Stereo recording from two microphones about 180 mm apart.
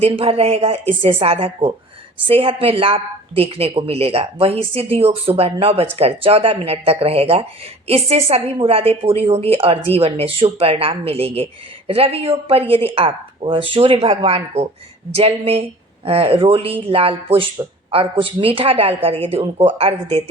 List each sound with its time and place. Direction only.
0.0 s a woman's voice: 35° right (ahead or behind)